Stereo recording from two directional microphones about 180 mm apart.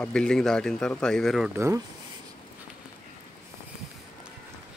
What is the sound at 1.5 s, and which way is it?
Speech, 15° right (ahead or behind).